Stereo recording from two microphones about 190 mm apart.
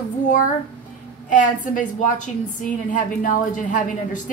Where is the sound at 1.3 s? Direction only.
45° left (ahead or behind).